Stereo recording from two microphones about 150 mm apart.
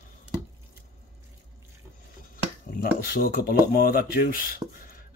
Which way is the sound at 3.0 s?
75° left (ahead or behind).